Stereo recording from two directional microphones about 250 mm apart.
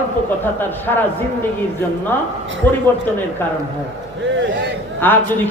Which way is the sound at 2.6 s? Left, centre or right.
Centre.